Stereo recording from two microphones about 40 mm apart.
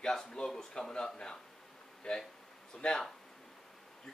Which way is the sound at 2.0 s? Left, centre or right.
Centre.